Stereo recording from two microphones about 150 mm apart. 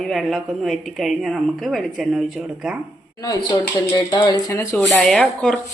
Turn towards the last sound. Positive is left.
turn(degrees=5)  # may be behind; listen again after turning